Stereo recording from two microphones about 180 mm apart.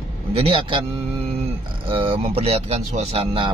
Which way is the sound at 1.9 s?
30° right (ahead or behind).